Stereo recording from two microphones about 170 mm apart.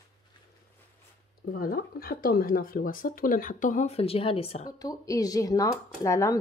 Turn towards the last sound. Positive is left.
turn(degrees=15)  # may be behind; listen again after turning